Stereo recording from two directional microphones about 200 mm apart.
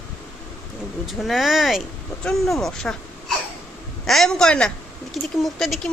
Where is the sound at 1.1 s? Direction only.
Centre (ahead or behind).